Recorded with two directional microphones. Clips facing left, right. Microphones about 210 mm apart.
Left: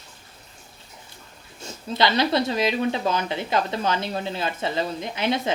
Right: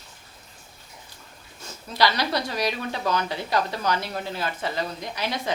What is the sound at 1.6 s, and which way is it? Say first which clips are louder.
Speech: left 1 dB; 25° left (ahead or behind).